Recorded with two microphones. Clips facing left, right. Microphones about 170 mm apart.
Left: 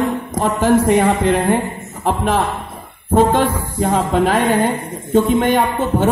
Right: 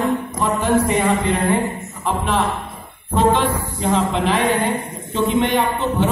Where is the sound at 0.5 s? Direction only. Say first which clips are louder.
Left 5 dB; 90° left.